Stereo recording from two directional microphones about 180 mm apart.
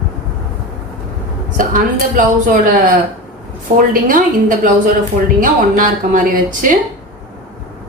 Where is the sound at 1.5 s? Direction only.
45° right (ahead or behind).